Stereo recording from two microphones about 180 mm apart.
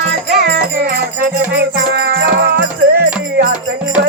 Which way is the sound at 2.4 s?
65° right (ahead or behind).